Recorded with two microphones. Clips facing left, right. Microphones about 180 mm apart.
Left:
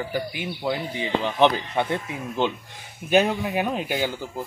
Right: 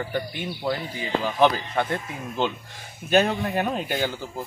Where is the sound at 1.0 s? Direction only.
20° left (ahead or behind).